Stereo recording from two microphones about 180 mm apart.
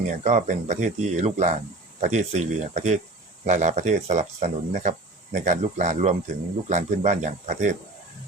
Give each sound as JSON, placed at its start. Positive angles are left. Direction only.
{"t": 0.1, "sound": "speech", "side_deg": -40}